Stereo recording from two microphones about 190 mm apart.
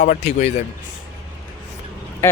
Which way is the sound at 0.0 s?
40° left (ahead or behind).